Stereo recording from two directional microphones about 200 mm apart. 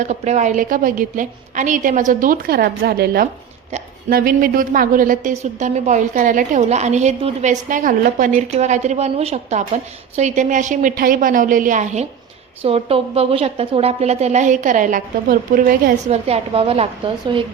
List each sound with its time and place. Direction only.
0.0 s a woman's voice: 35° right (ahead or behind)